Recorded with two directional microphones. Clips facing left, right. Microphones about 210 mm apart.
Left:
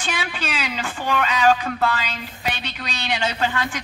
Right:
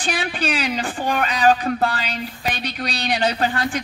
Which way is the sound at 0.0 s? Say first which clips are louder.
Right 4 dB; 35° right (ahead or behind).